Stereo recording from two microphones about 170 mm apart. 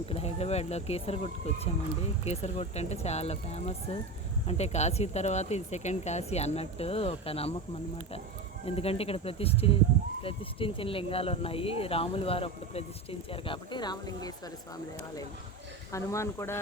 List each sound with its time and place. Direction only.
0.0 s speech: 35° left (ahead or behind)
8.6 s speech: 35° left (ahead or behind)
15.9 s speech: 15° left (ahead or behind)